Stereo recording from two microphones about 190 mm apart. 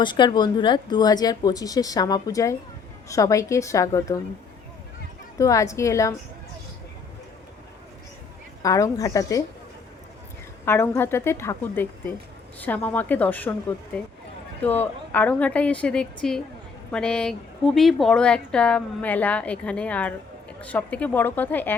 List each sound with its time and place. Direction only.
0.0 s a woman's voice: 25° left (ahead or behind)
5.4 s a woman's voice: 15° left (ahead or behind)
8.6 s a woman's voice: 20° left (ahead or behind)
10.7 s a woman's voice: 15° left (ahead or behind)